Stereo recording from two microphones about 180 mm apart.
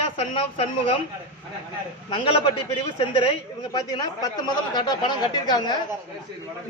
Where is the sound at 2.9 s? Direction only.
30° left (ahead or behind).